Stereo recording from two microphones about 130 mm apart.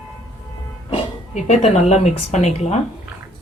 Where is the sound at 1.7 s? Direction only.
60° left (ahead or behind).